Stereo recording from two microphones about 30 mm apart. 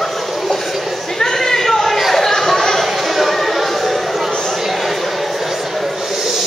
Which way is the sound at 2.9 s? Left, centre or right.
Centre.